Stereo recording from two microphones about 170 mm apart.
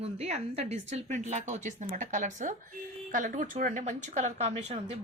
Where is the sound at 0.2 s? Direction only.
40° right (ahead or behind).